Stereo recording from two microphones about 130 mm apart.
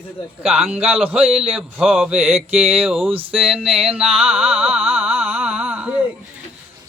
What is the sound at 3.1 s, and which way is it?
Speech, 45° right (ahead or behind).